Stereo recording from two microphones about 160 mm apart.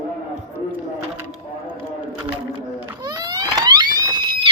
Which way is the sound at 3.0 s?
25° right (ahead or behind).